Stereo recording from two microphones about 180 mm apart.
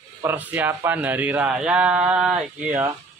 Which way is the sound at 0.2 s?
10° right (ahead or behind).